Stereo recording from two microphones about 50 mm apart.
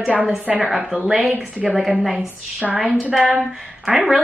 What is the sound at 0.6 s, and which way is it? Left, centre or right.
Speech, centre.